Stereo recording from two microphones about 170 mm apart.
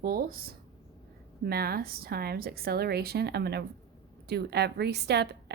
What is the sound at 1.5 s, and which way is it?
A woman's voice, 65° right (ahead or behind).